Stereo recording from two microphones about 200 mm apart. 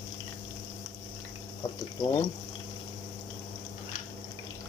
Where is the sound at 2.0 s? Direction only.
20° left (ahead or behind).